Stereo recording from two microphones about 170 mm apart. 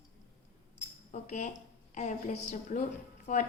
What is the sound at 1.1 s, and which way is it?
Cutlery, 45° left (ahead or behind).